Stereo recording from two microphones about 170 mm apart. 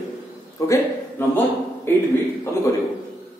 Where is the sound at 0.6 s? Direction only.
20° left (ahead or behind).